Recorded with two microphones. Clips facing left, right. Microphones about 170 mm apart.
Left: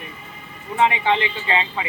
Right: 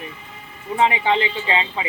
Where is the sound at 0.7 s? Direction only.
30° right (ahead or behind).